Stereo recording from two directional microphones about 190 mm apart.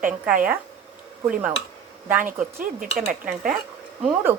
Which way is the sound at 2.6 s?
45° right (ahead or behind).